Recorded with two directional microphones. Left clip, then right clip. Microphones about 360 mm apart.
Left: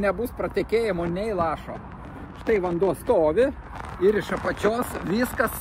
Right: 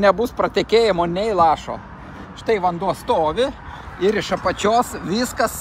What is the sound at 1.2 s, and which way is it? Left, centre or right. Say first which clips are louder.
Speech: right 8 dB; right.